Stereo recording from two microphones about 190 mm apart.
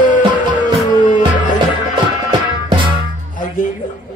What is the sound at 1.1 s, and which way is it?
Music, 40° left (ahead or behind).